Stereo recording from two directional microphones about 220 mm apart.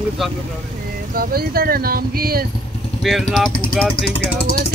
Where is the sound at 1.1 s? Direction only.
45° right (ahead or behind).